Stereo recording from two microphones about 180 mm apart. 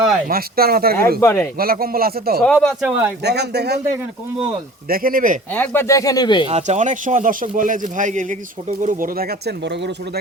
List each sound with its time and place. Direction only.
0.3 s speech: 55° right (ahead or behind)
1.2 s speech: 10° left (ahead or behind)
1.5 s speech: 55° right (ahead or behind)
2.4 s speech: 5° left (ahead or behind)
3.2 s speech: 65° right (ahead or behind)
4.9 s speech: 50° right (ahead or behind)
5.5 s speech: 15° left (ahead or behind)
6.4 s speech: 40° right (ahead or behind); by 9.9 s 65° right (ahead or behind)